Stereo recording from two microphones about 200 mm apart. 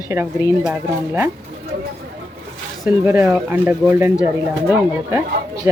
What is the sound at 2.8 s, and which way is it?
Speech, 10° right (ahead or behind).